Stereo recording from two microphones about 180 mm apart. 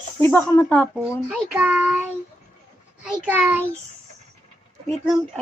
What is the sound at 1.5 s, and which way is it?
A child's voice, 5° right (ahead or behind).